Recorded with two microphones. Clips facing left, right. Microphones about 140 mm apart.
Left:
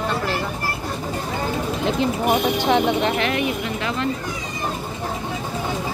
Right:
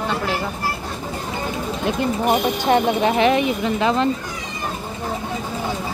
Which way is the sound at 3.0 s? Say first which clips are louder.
Right 4 dB; 15° right (ahead or behind).